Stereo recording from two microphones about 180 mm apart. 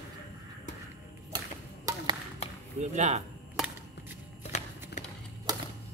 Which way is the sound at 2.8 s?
40° right (ahead or behind).